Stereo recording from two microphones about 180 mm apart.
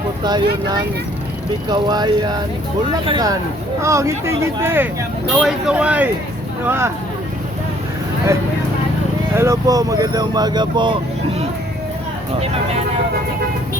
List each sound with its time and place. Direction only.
0.2 s speech: 25° right (ahead or behind)
9.3 s speech: 15° right (ahead or behind)